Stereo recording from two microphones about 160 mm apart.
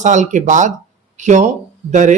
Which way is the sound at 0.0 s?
50° right (ahead or behind).